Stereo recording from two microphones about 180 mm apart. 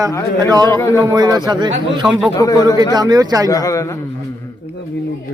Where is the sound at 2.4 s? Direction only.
20° left (ahead or behind).